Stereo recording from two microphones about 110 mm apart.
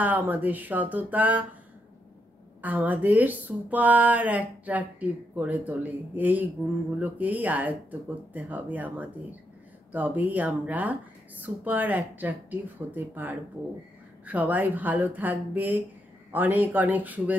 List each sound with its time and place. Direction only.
0.0 s speech: 15° right (ahead or behind)
2.6 s speech: 15° right (ahead or behind)